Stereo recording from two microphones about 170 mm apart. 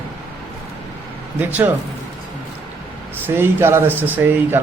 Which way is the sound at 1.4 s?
10° right (ahead or behind).